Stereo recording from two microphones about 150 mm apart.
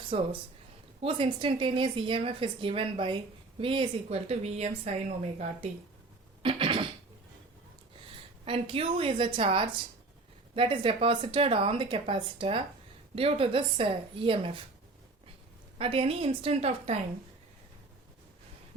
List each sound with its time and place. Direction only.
0.1 s a woman's voice: 40° right (ahead or behind)
6.4 s a sound: 35° right (ahead or behind)
8.4 s a woman's voice: 35° right (ahead or behind)
15.8 s a woman's voice: 40° right (ahead or behind)